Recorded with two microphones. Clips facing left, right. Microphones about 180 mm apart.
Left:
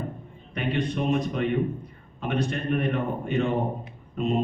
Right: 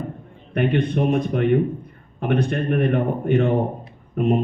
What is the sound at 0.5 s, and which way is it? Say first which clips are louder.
A man's voice: right 7 dB; 55° right (ahead or behind).